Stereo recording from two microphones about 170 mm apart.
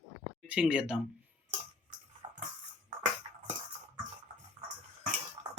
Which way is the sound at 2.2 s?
35° right (ahead or behind).